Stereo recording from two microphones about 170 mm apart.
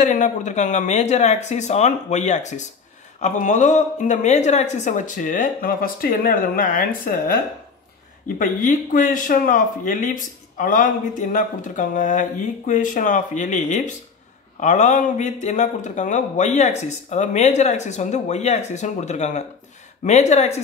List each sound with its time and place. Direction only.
0.0 s speech: 45° left (ahead or behind)
8.4 s speech: 50° left (ahead or behind)